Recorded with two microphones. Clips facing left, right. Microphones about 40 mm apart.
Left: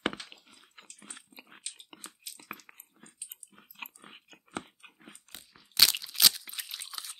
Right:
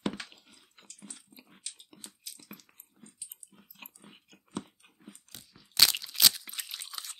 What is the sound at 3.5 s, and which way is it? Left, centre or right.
Dog, left.